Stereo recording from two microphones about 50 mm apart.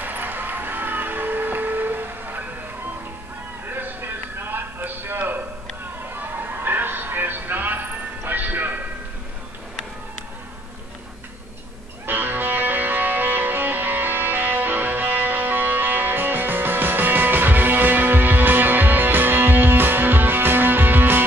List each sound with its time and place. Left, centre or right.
0.0 s vehicle: right
3.6 s a sound: right
8.3 s music: right
12.1 s music: right